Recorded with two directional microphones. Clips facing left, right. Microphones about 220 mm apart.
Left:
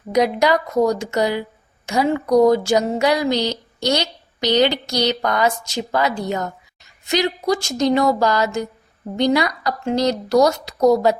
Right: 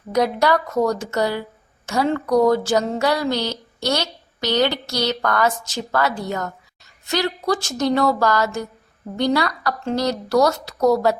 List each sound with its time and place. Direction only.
0.1 s speech: 15° left (ahead or behind)